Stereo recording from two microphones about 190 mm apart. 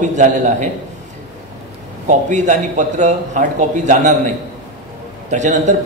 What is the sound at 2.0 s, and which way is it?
Speech, 40° right (ahead or behind).